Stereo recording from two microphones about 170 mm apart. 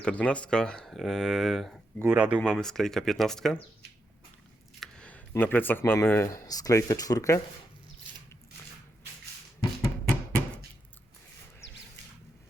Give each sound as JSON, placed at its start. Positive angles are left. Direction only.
{"t": 0.0, "sound": "speech", "side_deg": 5}
{"t": 4.8, "sound": "speech", "side_deg": 5}